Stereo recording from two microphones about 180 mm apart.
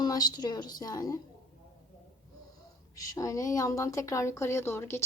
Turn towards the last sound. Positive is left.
turn(degrees=15)  # may be behind; listen again after turning